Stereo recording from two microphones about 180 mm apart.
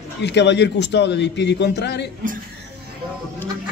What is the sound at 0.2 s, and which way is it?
A man's voice, 70° left (ahead or behind).